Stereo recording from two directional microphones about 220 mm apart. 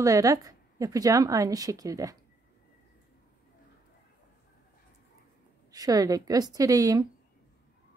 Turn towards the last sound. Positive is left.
turn(degrees=-15)  # may be behind; listen again after turning